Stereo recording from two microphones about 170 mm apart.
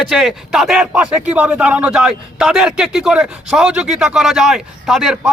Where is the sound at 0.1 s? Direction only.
Centre (ahead or behind).